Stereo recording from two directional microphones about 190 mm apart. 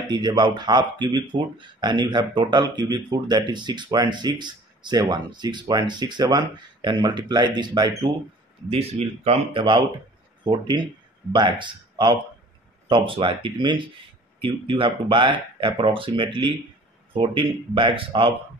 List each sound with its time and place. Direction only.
0.1 s speech: 20° right (ahead or behind)